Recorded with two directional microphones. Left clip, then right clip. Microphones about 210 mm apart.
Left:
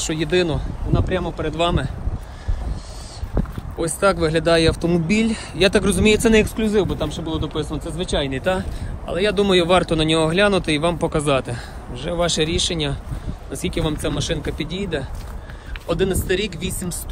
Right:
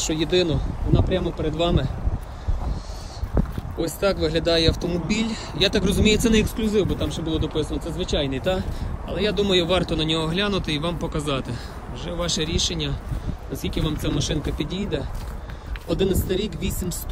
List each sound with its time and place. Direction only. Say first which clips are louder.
0.0 s speech: left 1 dB; centre (ahead or behind)
3.3 s speech: left 2 dB; centre (ahead or behind)
7.2 s a man's voice: even; 20° left (ahead or behind)
7.8 s speech: left 2 dB; 5° right (ahead or behind)